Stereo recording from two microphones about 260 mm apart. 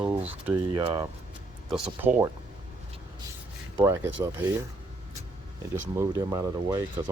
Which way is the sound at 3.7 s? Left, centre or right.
Centre.